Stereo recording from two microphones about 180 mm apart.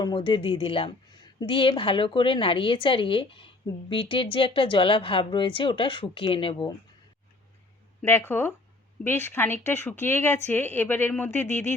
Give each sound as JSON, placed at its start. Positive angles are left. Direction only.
{"t": 0.0, "sound": "a woman's voice", "side_deg": 25}
{"t": 8.0, "sound": "speech", "side_deg": 10}